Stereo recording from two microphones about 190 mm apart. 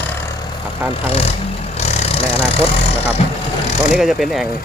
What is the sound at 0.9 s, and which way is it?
Speech, 30° left (ahead or behind).